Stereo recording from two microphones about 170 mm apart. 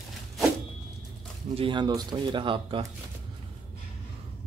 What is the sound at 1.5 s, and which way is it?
Speech, 30° right (ahead or behind).